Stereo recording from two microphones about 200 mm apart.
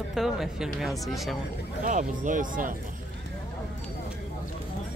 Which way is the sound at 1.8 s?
40° right (ahead or behind).